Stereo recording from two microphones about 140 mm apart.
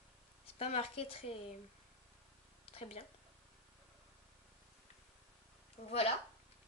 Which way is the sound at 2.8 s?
45° left (ahead or behind).